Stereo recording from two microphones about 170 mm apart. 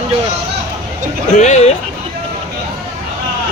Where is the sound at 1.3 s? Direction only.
45° left (ahead or behind).